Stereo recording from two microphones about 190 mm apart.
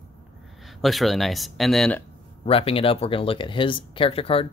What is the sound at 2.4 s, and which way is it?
Speech, 30° left (ahead or behind).